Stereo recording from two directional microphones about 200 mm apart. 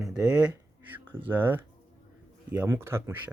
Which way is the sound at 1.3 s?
10° right (ahead or behind).